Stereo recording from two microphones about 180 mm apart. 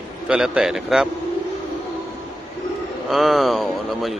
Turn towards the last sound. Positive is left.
turn(degrees=0)  # may be behind; listen again after turning